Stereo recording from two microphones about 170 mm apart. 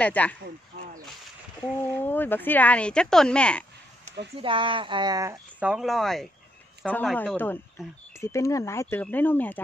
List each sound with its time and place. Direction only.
0.0 s speech: 10° left (ahead or behind)
2.0 s speech: 10° left (ahead or behind)
4.4 s speech: 30° right (ahead or behind)
5.6 s speech: 5° right (ahead or behind)